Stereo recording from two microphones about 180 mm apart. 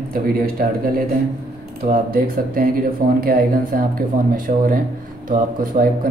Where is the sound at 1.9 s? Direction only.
55° right (ahead or behind).